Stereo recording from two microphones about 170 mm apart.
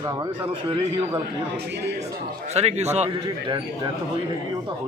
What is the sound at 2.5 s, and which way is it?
Speech, 40° right (ahead or behind).